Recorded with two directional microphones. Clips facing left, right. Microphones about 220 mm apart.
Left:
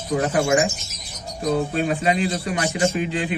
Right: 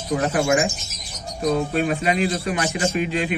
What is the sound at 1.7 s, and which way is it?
A man's voice, 30° left (ahead or behind).